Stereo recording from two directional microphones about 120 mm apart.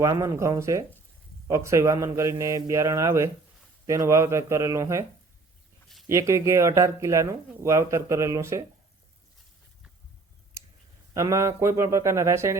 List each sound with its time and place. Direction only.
0.0 s speech: 25° right (ahead or behind)
6.1 s speech: 25° right (ahead or behind)
11.1 s speech: 25° right (ahead or behind)